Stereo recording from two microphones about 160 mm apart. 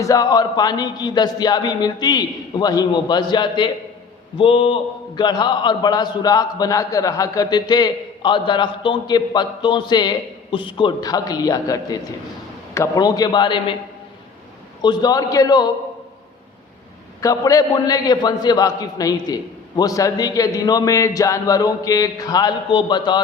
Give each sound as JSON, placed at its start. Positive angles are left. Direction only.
{"t": 0.0, "sound": "a man's voice", "side_deg": 20}
{"t": 14.8, "sound": "a man's voice", "side_deg": 25}
{"t": 17.2, "sound": "a man's voice", "side_deg": 20}